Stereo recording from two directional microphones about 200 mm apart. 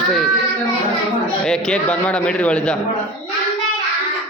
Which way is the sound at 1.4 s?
5° left (ahead or behind).